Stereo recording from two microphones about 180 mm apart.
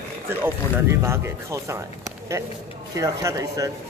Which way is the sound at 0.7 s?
15° right (ahead or behind).